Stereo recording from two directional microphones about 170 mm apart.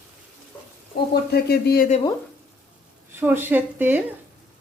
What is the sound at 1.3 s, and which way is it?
Speech, 70° left (ahead or behind).